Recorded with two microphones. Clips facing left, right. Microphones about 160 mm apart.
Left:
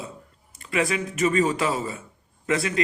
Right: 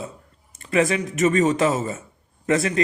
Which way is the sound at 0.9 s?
35° right (ahead or behind).